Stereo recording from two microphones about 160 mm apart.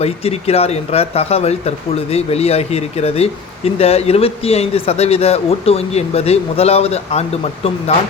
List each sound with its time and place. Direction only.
0.0 s speech: 40° left (ahead or behind)